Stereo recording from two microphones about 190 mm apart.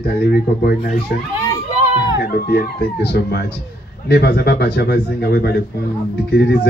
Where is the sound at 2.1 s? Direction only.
55° left (ahead or behind).